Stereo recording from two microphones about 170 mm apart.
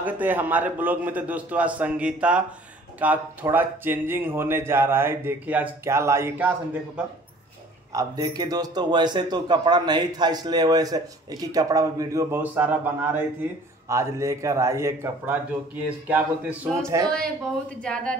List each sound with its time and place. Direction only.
0.0 s speech: 10° right (ahead or behind)
7.9 s a man's voice: 20° right (ahead or behind)
17.8 s speech: 5° left (ahead or behind)